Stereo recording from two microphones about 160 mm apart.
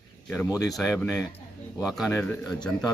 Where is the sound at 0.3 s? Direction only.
Centre (ahead or behind).